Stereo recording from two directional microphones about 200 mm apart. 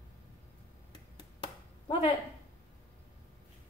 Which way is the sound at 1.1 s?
25° left (ahead or behind).